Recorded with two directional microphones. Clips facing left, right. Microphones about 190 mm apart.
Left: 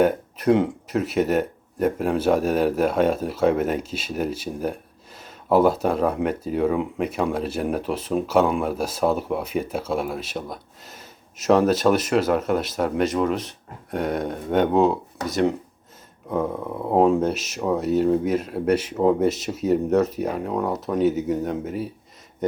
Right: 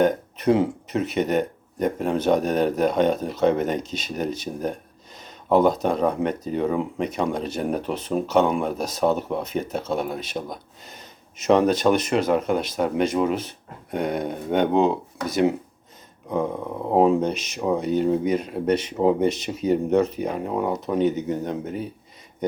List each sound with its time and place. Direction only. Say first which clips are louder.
0.0 s speech: even; 5° left (ahead or behind)